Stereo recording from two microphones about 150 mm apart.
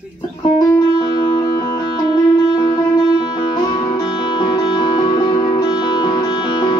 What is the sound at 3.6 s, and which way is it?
Music, 25° left (ahead or behind).